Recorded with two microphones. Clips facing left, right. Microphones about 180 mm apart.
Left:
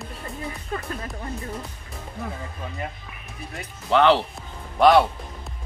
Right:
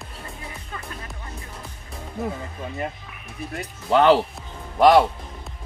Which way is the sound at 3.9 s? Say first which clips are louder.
Right 2 dB; 40° right (ahead or behind).